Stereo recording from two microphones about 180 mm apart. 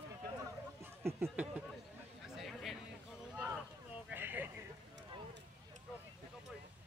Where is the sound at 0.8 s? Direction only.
10° right (ahead or behind).